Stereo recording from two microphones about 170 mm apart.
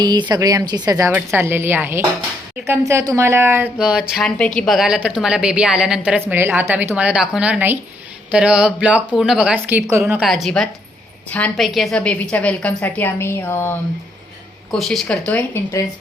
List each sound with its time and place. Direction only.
0.0 s a woman's voice: 25° right (ahead or behind); by 13.7 s 15° left (ahead or behind)
14.7 s speech: centre (ahead or behind)